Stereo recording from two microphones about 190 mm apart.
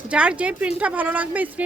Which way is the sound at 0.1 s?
5° right (ahead or behind).